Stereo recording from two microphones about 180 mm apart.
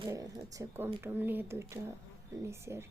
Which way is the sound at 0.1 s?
15° right (ahead or behind).